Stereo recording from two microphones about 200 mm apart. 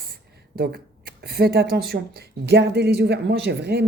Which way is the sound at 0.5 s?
50° right (ahead or behind).